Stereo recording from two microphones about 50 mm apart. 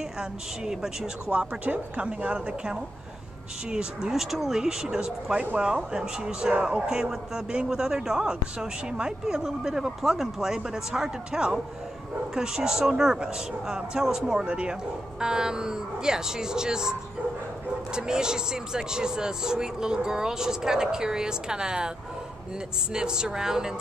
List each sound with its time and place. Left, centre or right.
0.2 s a man's voice: centre
1.6 s a woman's voice: right
17.9 s a man's voice: centre
22.9 s a man's voice: centre